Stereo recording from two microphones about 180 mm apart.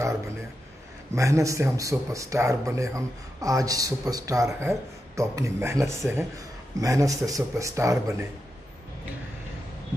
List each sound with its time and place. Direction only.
1.1 s speech: 15° right (ahead or behind)